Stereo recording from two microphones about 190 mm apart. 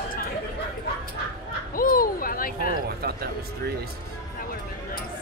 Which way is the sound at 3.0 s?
55° right (ahead or behind).